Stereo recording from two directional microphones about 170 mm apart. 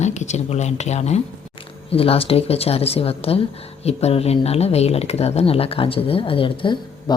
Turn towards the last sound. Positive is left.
turn(degrees=30)  # may be behind; listen again after turning